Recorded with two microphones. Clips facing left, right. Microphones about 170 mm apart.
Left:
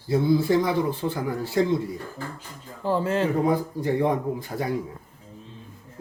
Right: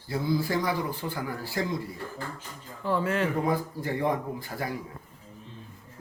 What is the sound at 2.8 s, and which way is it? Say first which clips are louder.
Speech: left 3 dB; 30° left (ahead or behind).